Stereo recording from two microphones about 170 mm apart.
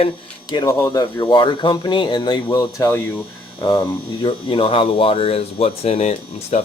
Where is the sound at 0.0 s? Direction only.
25° left (ahead or behind).